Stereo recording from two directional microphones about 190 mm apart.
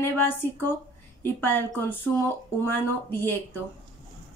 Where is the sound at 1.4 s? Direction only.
10° left (ahead or behind).